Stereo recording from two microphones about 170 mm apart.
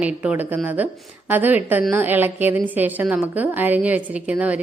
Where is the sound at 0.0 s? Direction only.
10° right (ahead or behind).